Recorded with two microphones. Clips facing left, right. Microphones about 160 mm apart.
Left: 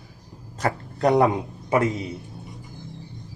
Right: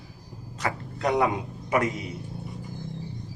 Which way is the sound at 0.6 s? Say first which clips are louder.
Left 6 dB; 35° left (ahead or behind).